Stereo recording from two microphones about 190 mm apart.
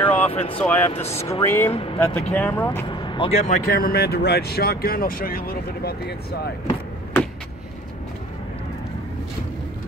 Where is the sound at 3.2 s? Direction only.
35° left (ahead or behind).